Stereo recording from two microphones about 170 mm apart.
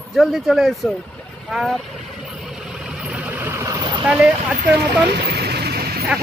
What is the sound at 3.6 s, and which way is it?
Vehicle, 25° right (ahead or behind).